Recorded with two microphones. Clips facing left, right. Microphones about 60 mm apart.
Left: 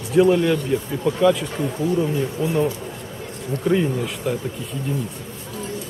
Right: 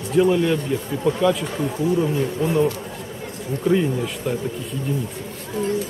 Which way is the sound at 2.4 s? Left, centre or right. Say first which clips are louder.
Right 2 dB; right.